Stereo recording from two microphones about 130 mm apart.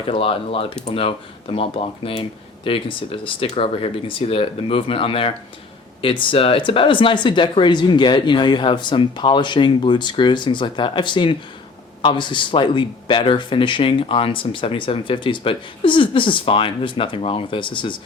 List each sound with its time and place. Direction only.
0.1 s speech: 45° left (ahead or behind)